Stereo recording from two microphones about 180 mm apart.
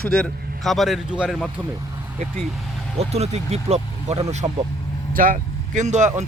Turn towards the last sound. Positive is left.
turn(degrees=-40)  # may be behind; listen again after turning